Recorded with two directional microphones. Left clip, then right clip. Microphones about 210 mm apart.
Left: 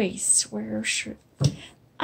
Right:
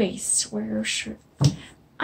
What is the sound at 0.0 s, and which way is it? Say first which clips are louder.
A woman's voice: even; 25° left (ahead or behind).